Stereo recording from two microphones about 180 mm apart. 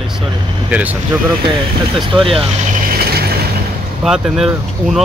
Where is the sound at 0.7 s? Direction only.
10° right (ahead or behind).